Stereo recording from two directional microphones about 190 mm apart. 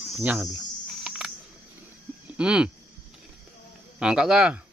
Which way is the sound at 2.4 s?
5° right (ahead or behind).